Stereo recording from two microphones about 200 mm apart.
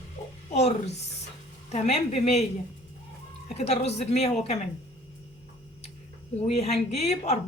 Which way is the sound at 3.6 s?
35° left (ahead or behind).